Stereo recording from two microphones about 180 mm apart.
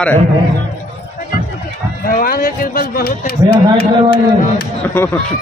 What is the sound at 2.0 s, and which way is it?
Speech, 55° left (ahead or behind).